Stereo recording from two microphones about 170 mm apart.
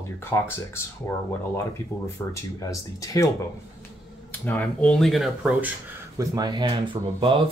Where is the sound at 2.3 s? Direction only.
20° left (ahead or behind).